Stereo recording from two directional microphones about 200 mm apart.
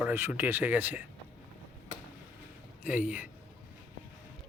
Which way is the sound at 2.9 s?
10° right (ahead or behind).